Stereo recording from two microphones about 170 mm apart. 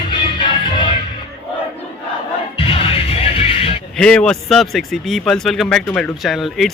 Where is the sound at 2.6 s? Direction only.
35° left (ahead or behind).